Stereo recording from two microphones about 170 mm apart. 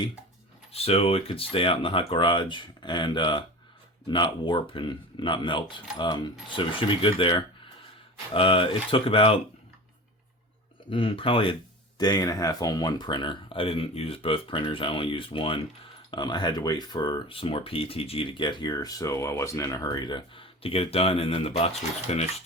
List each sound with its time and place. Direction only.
0.7 s speech: 35° left (ahead or behind)
10.8 s speech: 30° left (ahead or behind)